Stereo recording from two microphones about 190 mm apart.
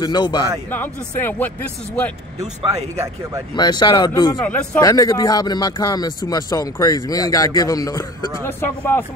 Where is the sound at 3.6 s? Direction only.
20° left (ahead or behind).